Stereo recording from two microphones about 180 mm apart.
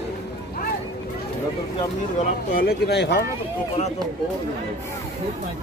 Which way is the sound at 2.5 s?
65° left (ahead or behind).